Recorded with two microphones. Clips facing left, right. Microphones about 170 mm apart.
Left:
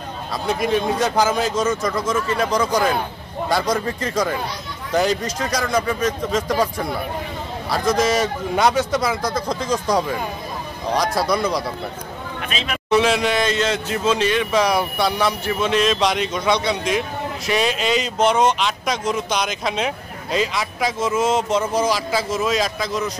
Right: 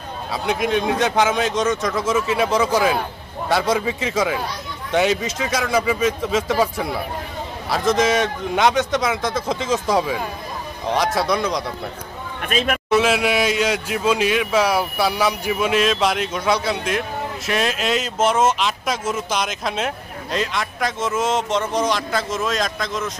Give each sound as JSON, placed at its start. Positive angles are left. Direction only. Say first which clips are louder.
{"t": 0.3, "sound": "speech", "louder": "even", "side_deg": 0}
{"t": 12.4, "sound": "a man's voice", "louder": "right 7 dB", "side_deg": -50}
{"t": 12.9, "sound": "a man's voice", "louder": "left 1 dB", "side_deg": -5}